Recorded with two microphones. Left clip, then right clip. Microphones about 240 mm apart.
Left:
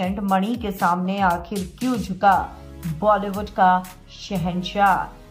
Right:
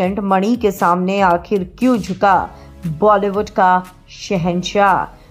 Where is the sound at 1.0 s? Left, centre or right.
Right.